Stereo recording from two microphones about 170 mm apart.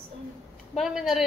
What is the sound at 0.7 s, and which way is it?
Speech, centre (ahead or behind).